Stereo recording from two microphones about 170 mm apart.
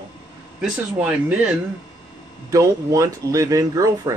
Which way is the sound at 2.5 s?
20° right (ahead or behind).